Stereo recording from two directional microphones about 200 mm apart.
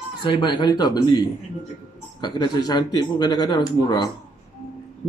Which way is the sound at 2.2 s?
20° left (ahead or behind).